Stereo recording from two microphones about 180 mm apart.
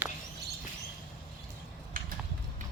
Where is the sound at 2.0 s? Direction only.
50° right (ahead or behind).